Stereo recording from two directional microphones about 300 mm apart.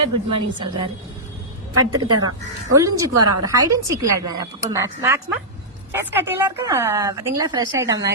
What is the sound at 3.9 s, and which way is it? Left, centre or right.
Speech, right.